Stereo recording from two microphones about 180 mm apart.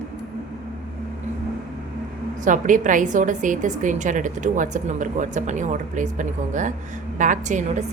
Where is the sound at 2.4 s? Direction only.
45° right (ahead or behind).